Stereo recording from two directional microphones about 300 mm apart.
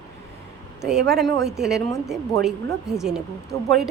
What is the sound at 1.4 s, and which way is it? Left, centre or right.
A woman's voice, centre.